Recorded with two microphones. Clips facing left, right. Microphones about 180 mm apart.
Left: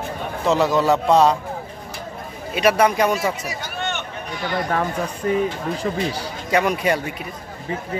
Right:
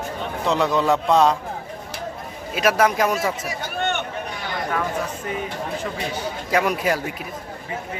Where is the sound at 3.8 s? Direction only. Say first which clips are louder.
Right 3 dB; 55° right (ahead or behind).